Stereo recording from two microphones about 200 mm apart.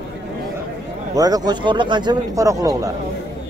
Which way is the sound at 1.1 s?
20° right (ahead or behind).